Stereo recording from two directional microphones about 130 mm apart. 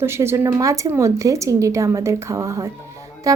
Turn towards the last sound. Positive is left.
turn(degrees=-25)  # may be behind; listen again after turning